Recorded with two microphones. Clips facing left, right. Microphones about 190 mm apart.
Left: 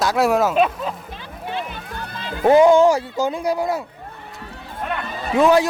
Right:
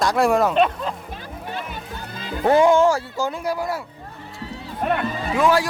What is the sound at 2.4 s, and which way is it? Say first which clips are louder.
Speech: left 3 dB; 15° left (ahead or behind).